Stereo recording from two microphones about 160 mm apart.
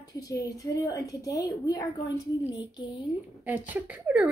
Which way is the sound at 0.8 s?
20° left (ahead or behind).